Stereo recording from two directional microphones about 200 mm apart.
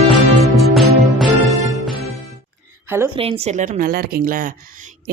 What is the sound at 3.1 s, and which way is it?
Speech, 30° right (ahead or behind).